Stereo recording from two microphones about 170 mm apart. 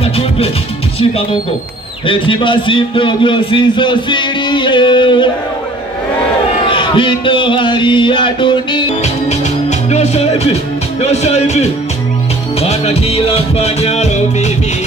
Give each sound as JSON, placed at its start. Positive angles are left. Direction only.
{"t": 2.0, "sound": "a man's voice", "side_deg": 30}
{"t": 6.7, "sound": "a man's voice", "side_deg": 30}
{"t": 9.0, "sound": "music", "side_deg": 40}